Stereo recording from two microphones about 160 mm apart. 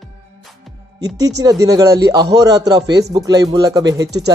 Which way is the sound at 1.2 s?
25° right (ahead or behind).